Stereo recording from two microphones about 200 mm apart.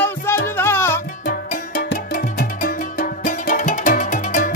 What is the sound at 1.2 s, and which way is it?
Music, 50° left (ahead or behind).